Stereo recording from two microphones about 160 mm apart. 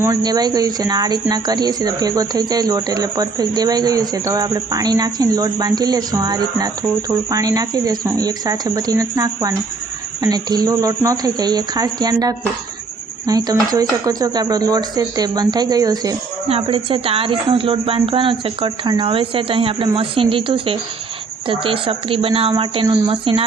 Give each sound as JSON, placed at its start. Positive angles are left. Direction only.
{"t": 0.0, "sound": "speech", "side_deg": -25}
{"t": 16.5, "sound": "speech", "side_deg": -35}